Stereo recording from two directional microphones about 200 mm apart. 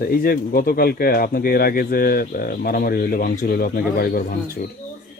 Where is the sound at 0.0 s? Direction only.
45° left (ahead or behind).